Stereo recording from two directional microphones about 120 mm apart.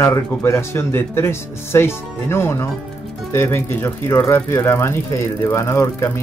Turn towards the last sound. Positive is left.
turn(degrees=20)  # may be behind; listen again after turning